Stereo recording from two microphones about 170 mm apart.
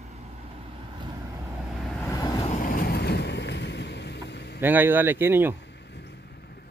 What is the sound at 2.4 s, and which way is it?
Vehicle, 55° left (ahead or behind).